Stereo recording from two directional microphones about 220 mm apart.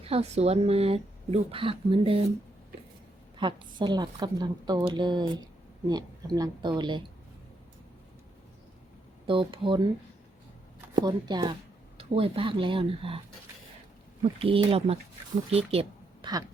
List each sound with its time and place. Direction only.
0.0 s a woman's voice: 25° right (ahead or behind)
3.3 s a woman's voice: 20° right (ahead or behind)
9.2 s a woman's voice: 25° right (ahead or behind)
10.9 s a woman's voice: 20° right (ahead or behind)
14.2 s a woman's voice: 25° right (ahead or behind)